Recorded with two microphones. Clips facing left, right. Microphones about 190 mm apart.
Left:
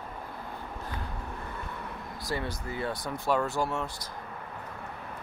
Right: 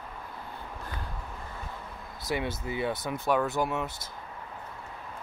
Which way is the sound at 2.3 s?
20° right (ahead or behind).